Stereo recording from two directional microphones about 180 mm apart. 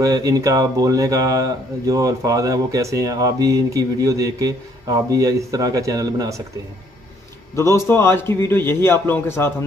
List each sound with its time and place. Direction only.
0.0 s speech: 20° right (ahead or behind)
7.5 s a man's voice: 15° left (ahead or behind)